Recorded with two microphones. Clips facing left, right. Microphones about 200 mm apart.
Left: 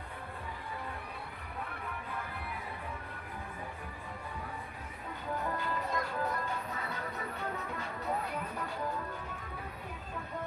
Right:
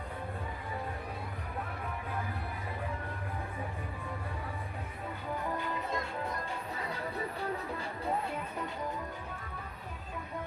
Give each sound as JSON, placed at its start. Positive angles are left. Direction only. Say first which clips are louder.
{"t": 5.5, "sound": "music", "louder": "even", "side_deg": -25}